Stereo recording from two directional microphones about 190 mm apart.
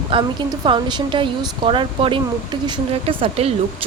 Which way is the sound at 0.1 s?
25° right (ahead or behind).